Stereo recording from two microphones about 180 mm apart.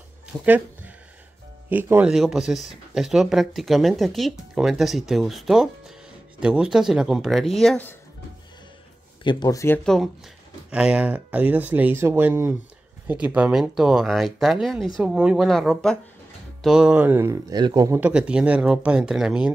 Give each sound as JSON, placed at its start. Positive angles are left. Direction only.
{"t": 0.3, "sound": "a sound", "side_deg": -10}
{"t": 1.7, "sound": "speech", "side_deg": -10}
{"t": 9.2, "sound": "speech", "side_deg": 25}
{"t": 10.7, "sound": "speech", "side_deg": -5}